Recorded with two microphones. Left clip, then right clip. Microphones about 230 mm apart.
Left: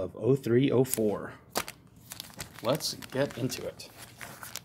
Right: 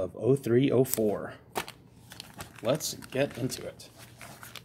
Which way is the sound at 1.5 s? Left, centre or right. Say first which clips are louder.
Left 4 dB; left.